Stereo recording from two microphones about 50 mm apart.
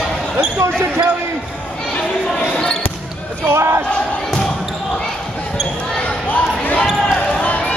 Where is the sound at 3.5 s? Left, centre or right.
Right.